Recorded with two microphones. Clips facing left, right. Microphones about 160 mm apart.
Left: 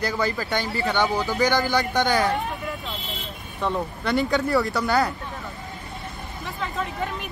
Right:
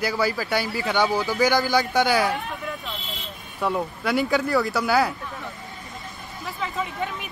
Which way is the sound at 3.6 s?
5° right (ahead or behind).